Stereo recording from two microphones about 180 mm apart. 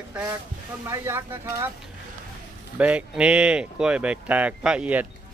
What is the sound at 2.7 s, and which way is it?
Speech, 5° right (ahead or behind).